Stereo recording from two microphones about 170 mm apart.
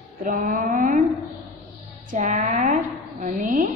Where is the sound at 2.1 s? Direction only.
45° right (ahead or behind).